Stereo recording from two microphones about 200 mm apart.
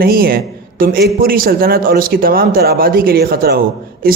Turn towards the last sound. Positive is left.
turn(degrees=-45)  # may be behind; listen again after turning